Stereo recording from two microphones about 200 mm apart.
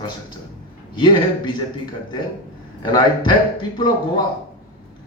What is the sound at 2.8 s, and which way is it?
Speech, 20° left (ahead or behind).